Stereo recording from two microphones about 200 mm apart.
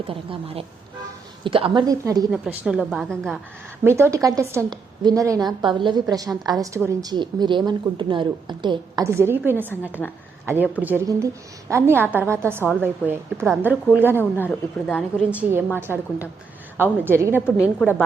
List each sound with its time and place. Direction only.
0.1 s a woman's voice: 30° right (ahead or behind)
2.3 s a woman's voice: 5° right (ahead or behind)
3.8 s a woman's voice: 15° right (ahead or behind)
14.4 s speech: 5° left (ahead or behind)
15.3 s a woman's voice: 10° right (ahead or behind)